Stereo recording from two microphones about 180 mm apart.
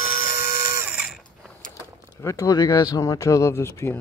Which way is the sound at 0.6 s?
10° right (ahead or behind).